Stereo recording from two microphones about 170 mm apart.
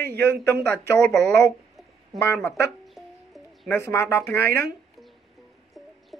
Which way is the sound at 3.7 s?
15° left (ahead or behind).